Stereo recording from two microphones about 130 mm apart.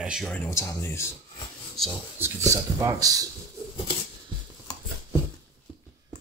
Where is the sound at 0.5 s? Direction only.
20° left (ahead or behind).